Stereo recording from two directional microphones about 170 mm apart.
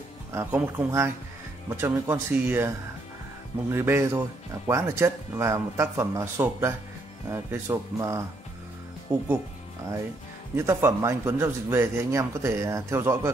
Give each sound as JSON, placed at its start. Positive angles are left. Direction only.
{"t": 0.3, "sound": "speech", "side_deg": -15}
{"t": 3.7, "sound": "speech", "side_deg": -15}
{"t": 10.5, "sound": "speech", "side_deg": -15}